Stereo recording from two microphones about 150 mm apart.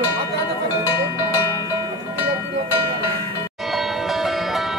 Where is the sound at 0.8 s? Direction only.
25° left (ahead or behind).